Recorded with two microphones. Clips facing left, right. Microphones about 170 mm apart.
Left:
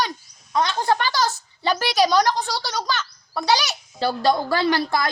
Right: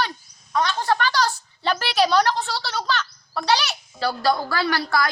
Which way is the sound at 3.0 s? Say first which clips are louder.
Even; 5° left (ahead or behind).